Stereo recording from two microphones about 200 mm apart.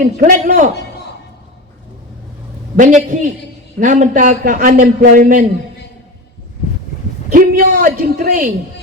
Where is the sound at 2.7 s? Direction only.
40° right (ahead or behind).